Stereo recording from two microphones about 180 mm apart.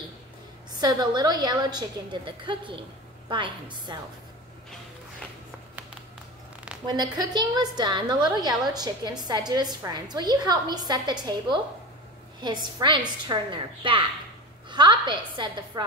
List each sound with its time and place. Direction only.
0.7 s a woman's voice: 25° right (ahead or behind)
6.9 s a woman's voice: 25° right (ahead or behind)